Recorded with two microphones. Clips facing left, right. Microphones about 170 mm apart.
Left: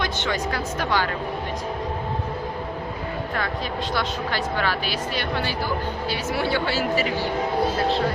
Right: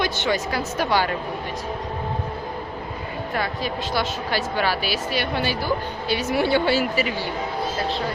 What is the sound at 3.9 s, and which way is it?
Speech, 10° right (ahead or behind).